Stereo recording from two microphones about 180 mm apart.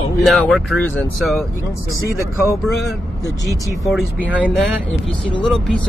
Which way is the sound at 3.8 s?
5° right (ahead or behind).